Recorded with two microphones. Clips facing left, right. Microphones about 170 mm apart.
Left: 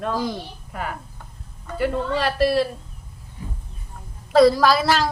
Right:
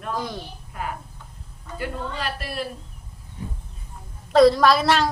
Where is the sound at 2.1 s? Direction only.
80° left.